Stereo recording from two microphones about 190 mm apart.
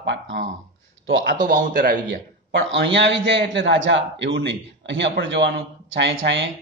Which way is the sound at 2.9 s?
65° right (ahead or behind).